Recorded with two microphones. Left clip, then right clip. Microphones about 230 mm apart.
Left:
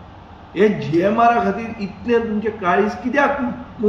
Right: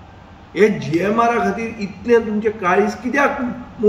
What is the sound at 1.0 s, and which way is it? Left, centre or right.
A man's voice, centre.